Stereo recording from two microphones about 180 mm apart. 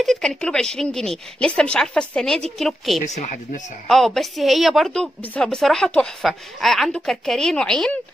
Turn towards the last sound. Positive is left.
turn(degrees=5)  # may be behind; listen again after turning